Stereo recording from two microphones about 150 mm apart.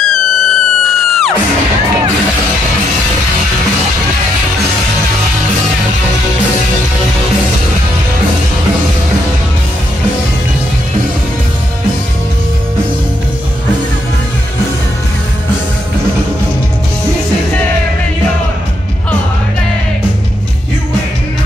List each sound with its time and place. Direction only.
0.1 s music: centre (ahead or behind)